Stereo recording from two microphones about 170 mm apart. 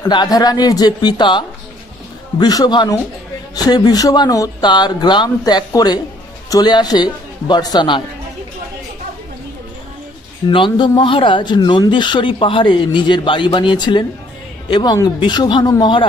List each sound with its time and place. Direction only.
0.0 s speech: 25° left (ahead or behind)
10.5 s speech: 30° left (ahead or behind)